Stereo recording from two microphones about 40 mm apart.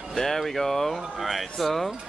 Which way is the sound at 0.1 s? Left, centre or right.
Centre.